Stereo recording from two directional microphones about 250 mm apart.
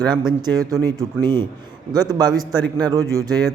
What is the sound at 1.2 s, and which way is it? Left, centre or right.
Speech, centre.